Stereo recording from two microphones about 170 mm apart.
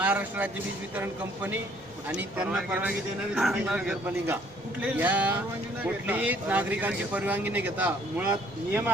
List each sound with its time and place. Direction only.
0.0 s speech: 10° right (ahead or behind)